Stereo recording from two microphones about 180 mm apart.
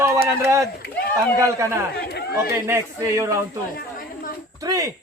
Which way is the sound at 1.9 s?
65° left (ahead or behind).